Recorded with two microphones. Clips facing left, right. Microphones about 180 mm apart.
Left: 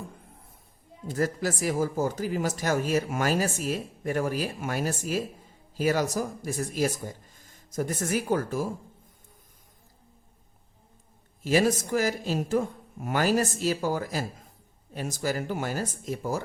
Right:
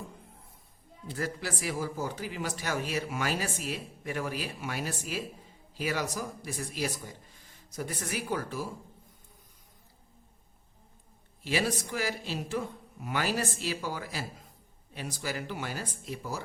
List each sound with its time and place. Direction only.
1.0 s speech: 45° left (ahead or behind)
11.4 s speech: 45° left (ahead or behind)